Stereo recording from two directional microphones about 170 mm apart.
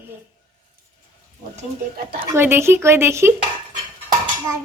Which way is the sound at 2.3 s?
15° right (ahead or behind).